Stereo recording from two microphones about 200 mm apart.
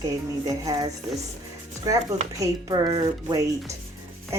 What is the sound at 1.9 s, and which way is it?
Speech, 20° right (ahead or behind).